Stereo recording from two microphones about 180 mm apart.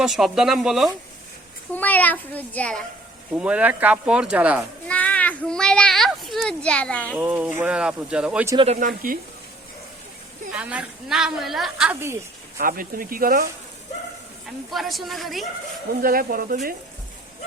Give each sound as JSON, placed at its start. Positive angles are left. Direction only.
{"t": 0.0, "sound": "speech", "side_deg": 0}
{"t": 1.7, "sound": "a child's voice", "side_deg": 10}
{"t": 3.3, "sound": "a woman's voice", "side_deg": -5}
{"t": 4.9, "sound": "a child's voice", "side_deg": 10}
{"t": 7.2, "sound": "a woman's voice", "side_deg": -5}
{"t": 8.6, "sound": "speech", "side_deg": -40}
{"t": 8.9, "sound": "speech", "side_deg": -50}
{"t": 10.5, "sound": "a woman's voice", "side_deg": -5}
{"t": 12.5, "sound": "speech", "side_deg": -50}
{"t": 14.7, "sound": "speech", "side_deg": 0}
{"t": 16.0, "sound": "speech", "side_deg": -55}